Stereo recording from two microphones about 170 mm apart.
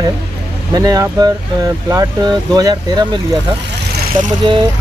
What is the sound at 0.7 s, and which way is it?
Speech, 20° right (ahead or behind).